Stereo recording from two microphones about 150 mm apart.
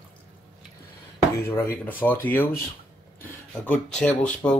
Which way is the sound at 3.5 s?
5° left (ahead or behind).